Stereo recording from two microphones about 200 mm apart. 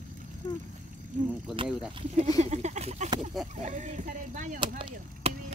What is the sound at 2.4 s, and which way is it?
Speech, 35° right (ahead or behind).